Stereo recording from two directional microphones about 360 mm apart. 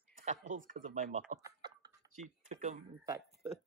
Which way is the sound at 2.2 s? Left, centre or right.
Centre.